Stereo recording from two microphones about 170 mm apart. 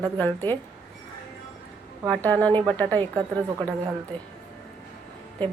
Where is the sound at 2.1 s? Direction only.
10° left (ahead or behind).